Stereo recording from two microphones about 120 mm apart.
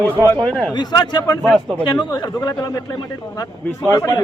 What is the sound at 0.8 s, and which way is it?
A man's voice, 35° left (ahead or behind).